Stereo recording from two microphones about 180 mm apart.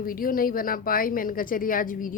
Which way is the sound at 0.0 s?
55° left (ahead or behind).